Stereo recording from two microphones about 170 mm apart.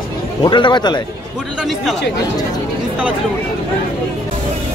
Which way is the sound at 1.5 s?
Centre (ahead or behind).